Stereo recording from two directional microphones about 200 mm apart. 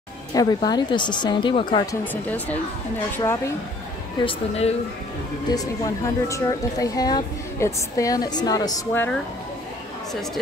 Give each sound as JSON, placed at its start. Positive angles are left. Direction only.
{"t": 0.3, "sound": "a woman's voice", "side_deg": 20}
{"t": 2.2, "sound": "a woman's voice", "side_deg": 5}
{"t": 4.2, "sound": "a woman's voice", "side_deg": 30}
{"t": 5.5, "sound": "a woman's voice", "side_deg": 15}